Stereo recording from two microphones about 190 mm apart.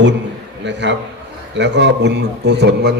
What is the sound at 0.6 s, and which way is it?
A man's voice, 70° right (ahead or behind).